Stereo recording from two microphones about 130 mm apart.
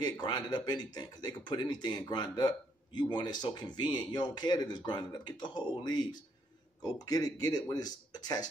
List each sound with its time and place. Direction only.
0.0 s speech: 35° left (ahead or behind)